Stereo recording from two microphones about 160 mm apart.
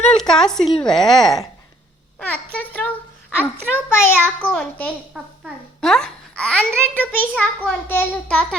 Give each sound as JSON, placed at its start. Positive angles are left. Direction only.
{"t": 0.1, "sound": "a woman's voice", "side_deg": 5}
{"t": 5.2, "sound": "a child's voice", "side_deg": -5}
{"t": 5.8, "sound": "a child's voice", "side_deg": 5}